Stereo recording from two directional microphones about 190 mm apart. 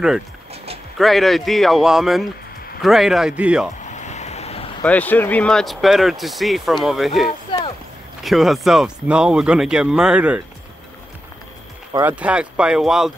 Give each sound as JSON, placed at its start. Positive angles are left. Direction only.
{"t": 0.9, "sound": "speech", "side_deg": 0}
{"t": 3.8, "sound": "vehicle", "side_deg": 40}
{"t": 4.8, "sound": "speech", "side_deg": 10}
{"t": 7.5, "sound": "clip-clop", "side_deg": 25}
{"t": 8.2, "sound": "speech", "side_deg": 0}
{"t": 11.9, "sound": "speech", "side_deg": -10}